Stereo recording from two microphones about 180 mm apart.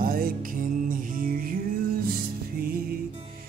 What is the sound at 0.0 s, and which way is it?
Music, 55° right (ahead or behind).